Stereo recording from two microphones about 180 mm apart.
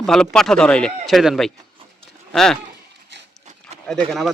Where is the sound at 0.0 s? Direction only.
5° left (ahead or behind).